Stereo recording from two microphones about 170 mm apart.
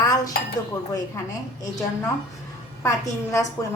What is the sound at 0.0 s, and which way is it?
Chink, 20° left (ahead or behind).